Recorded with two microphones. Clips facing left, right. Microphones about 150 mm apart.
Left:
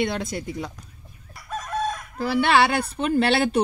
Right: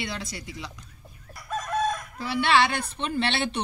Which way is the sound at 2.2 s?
45° left (ahead or behind).